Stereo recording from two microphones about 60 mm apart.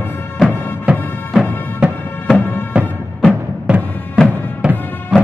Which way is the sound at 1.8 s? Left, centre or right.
Right.